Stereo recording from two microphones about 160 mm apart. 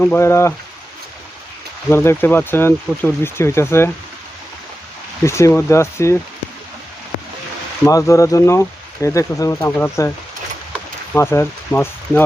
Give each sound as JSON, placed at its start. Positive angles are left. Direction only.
{"t": 0.0, "sound": "speech", "side_deg": 15}
{"t": 1.9, "sound": "speech", "side_deg": 15}
{"t": 5.2, "sound": "speech", "side_deg": 15}
{"t": 7.9, "sound": "speech", "side_deg": 20}
{"t": 10.7, "sound": "a sound", "side_deg": 15}